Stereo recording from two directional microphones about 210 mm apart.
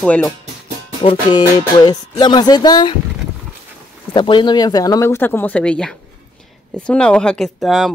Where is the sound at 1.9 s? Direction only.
20° left (ahead or behind).